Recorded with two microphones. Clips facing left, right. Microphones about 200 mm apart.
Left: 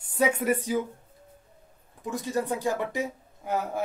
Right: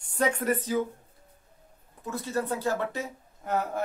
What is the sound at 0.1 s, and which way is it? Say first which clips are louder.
Speech: left 2 dB; 10° left (ahead or behind).